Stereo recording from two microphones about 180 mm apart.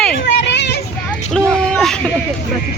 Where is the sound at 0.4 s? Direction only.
70° left (ahead or behind).